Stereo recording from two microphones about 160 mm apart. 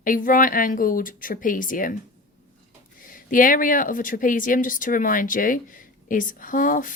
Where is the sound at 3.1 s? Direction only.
60° left (ahead or behind).